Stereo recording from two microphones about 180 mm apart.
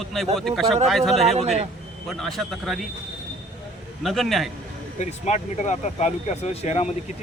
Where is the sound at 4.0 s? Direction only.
Centre (ahead or behind).